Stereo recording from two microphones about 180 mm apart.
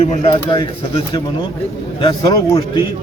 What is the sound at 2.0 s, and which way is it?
Speech, 20° left (ahead or behind).